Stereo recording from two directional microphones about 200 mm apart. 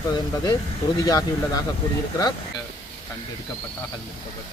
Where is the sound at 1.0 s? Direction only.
20° left (ahead or behind).